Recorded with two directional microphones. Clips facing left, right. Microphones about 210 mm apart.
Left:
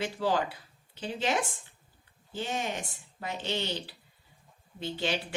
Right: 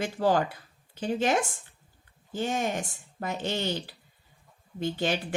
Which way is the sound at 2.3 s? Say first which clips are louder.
Right 5 dB; 45° right (ahead or behind).